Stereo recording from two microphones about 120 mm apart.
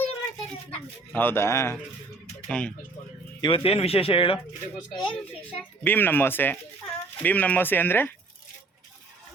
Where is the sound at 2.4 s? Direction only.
10° left (ahead or behind).